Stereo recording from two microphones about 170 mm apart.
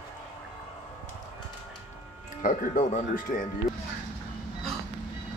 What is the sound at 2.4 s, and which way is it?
Speech, 45° left (ahead or behind).